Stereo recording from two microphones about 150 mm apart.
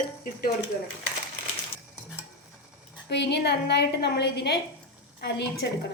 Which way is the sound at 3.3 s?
90° left.